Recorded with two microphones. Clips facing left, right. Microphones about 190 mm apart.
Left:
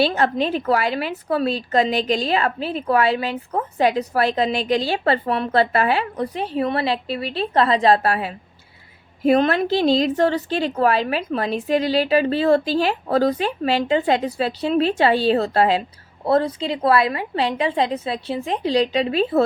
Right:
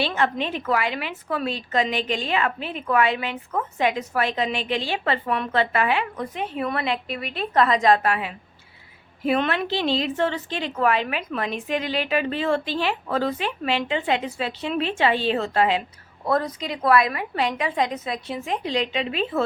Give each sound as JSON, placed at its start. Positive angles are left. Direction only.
{"t": 0.0, "sound": "a woman's voice", "side_deg": 35}